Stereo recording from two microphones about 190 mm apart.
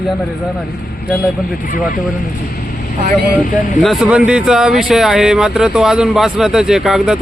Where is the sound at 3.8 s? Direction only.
Centre (ahead or behind).